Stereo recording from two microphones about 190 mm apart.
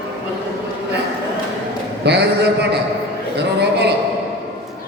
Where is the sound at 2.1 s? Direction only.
60° right (ahead or behind).